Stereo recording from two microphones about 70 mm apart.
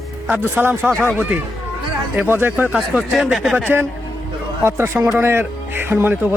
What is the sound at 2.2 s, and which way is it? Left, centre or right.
Speech, right.